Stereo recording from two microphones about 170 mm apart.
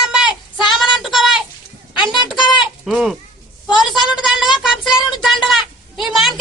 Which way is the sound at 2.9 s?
Centre (ahead or behind).